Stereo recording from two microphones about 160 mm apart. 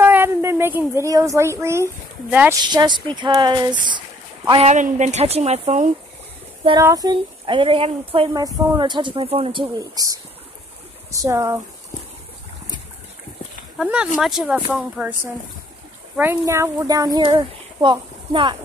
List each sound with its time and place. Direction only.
0.0 s a sound: 15° right (ahead or behind)
2.6 s speech: 25° right (ahead or behind)
4.5 s speech: 40° right (ahead or behind)
6.8 s speech: 20° right (ahead or behind); by 8.3 s 35° right (ahead or behind)
8.3 s speech: 20° right (ahead or behind)
13.7 s speech: 5° right (ahead or behind)
16.2 s speech: 15° right (ahead or behind)